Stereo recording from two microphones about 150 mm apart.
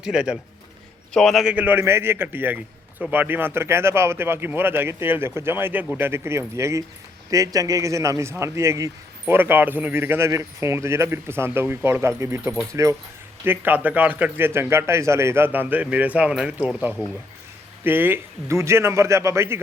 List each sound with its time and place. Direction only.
0.0 s a man's voice: 5° right (ahead or behind)
1.5 s speech: 10° right (ahead or behind)